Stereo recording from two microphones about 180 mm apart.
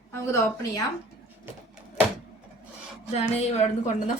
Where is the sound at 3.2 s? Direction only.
35° left (ahead or behind).